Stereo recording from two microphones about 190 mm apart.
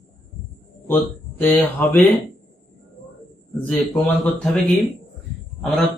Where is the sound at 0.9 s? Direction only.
10° left (ahead or behind).